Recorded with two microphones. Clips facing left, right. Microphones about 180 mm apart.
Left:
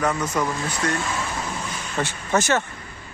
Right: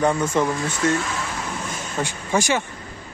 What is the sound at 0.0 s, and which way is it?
Speech, 30° right (ahead or behind).